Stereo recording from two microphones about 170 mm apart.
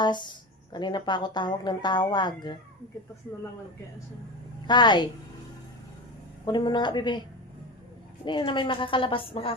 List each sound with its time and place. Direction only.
0.0 s speech: 25° left (ahead or behind)
4.6 s speech: 25° left (ahead or behind)
6.4 s speech: 25° left (ahead or behind)